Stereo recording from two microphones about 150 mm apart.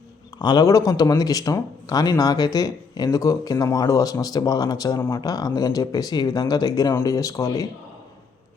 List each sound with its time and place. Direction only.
0.3 s speech: 30° left (ahead or behind)